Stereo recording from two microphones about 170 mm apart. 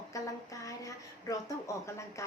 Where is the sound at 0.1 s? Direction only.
20° left (ahead or behind).